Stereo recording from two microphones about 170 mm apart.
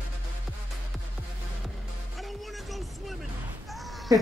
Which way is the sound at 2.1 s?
Centre (ahead or behind).